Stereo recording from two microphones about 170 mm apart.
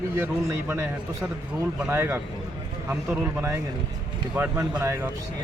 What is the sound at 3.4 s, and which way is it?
Speech, 15° right (ahead or behind).